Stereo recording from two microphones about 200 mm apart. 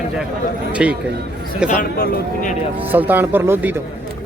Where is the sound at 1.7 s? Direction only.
45° left (ahead or behind).